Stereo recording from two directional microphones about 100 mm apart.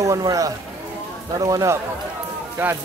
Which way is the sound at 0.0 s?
35° right (ahead or behind).